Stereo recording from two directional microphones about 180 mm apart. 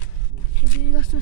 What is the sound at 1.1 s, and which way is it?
Speech, 50° left (ahead or behind).